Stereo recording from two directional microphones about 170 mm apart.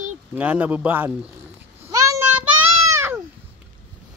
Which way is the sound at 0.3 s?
10° right (ahead or behind).